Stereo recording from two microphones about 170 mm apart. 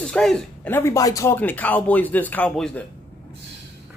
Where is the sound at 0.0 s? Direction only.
5° left (ahead or behind).